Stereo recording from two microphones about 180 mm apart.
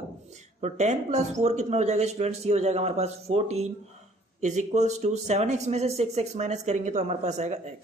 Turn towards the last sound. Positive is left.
turn(degrees=-40)  # may be behind; listen again after turning